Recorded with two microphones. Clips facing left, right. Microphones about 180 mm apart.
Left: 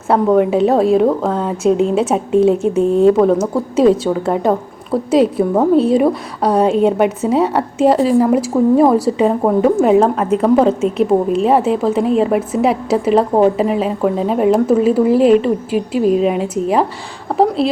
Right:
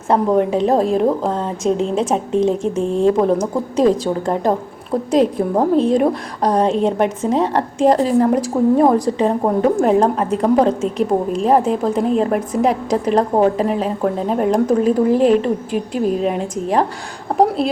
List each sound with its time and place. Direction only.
0.1 s a woman's voice: 5° left (ahead or behind)